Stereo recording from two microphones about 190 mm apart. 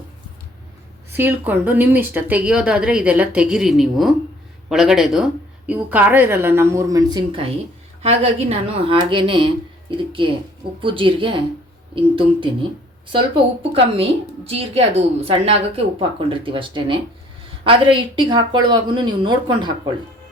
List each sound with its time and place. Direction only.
1.1 s a woman's voice: 10° right (ahead or behind)
8.0 s a woman's voice: 30° right (ahead or behind)